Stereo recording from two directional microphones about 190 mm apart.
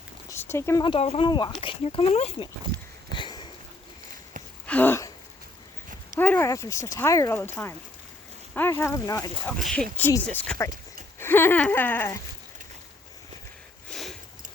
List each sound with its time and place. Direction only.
0.3 s speech: 15° left (ahead or behind)
0.9 s speech: 30° left (ahead or behind)
3.2 s a sound: 25° left (ahead or behind)
4.6 s a sound: 10° left (ahead or behind)
6.1 s speech: 10° left (ahead or behind)
9.5 s speech: centre (ahead or behind)
13.9 s sniff: centre (ahead or behind)